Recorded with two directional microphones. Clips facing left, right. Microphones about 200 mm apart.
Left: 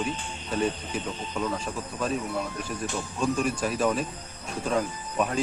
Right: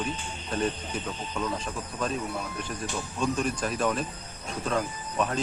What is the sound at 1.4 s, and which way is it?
Speech, 5° left (ahead or behind).